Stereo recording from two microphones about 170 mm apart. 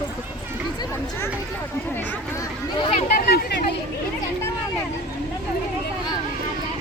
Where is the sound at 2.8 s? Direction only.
35° left (ahead or behind).